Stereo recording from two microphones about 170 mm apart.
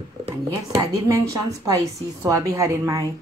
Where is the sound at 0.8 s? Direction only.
20° right (ahead or behind).